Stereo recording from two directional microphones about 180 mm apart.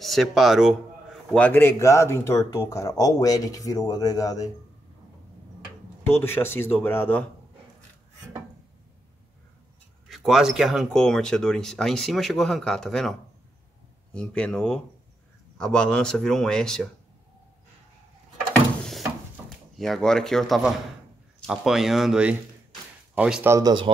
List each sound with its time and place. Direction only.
0.0 s a man's voice: centre (ahead or behind); by 4.5 s 20° left (ahead or behind)
6.1 s a man's voice: 15° left (ahead or behind)
10.0 s speech: centre (ahead or behind)
14.1 s speech: 5° left (ahead or behind)
19.8 s speech: centre (ahead or behind)
23.5 s speech: 25° right (ahead or behind)